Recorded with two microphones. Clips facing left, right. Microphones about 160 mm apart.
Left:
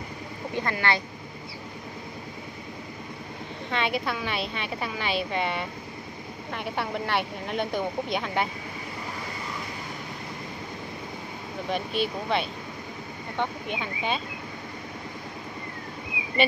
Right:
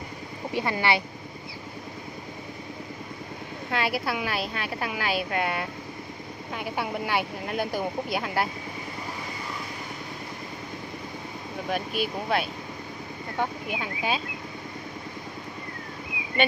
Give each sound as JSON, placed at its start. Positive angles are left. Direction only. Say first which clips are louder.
{"t": 0.6, "sound": "speech", "louder": "right 2 dB", "side_deg": -15}
{"t": 3.7, "sound": "speech", "louder": "even", "side_deg": -5}
{"t": 11.7, "sound": "speech", "louder": "left 1 dB", "side_deg": -5}